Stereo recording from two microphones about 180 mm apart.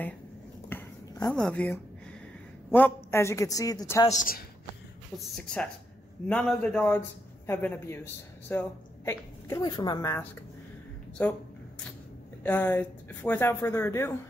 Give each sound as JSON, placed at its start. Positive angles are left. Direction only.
{"t": 0.7, "sound": "a sound", "side_deg": 15}
{"t": 1.3, "sound": "speech", "side_deg": 5}
{"t": 4.1, "sound": "a man's voice", "side_deg": 50}
{"t": 5.2, "sound": "a woman's voice", "side_deg": 5}
{"t": 12.4, "sound": "speech", "side_deg": 10}